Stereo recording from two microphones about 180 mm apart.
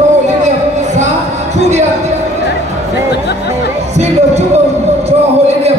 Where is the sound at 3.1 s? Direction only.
65° left (ahead or behind).